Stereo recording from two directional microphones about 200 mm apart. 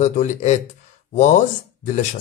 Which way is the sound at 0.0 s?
35° left (ahead or behind).